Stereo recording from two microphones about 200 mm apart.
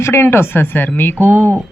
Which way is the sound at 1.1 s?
10° right (ahead or behind).